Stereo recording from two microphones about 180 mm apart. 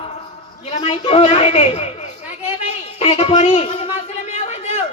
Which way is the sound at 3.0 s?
35° left (ahead or behind).